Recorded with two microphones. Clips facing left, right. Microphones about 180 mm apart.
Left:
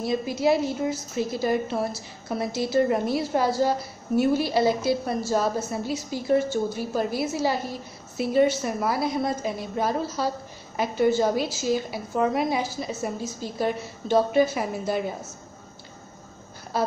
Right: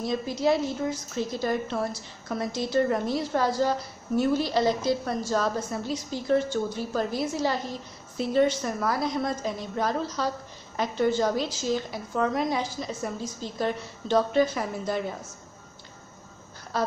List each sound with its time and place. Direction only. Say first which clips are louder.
0.0 s a woman's voice: left 2 dB; 10° left (ahead or behind)
16.7 s a woman's voice: left 2 dB; 10° left (ahead or behind)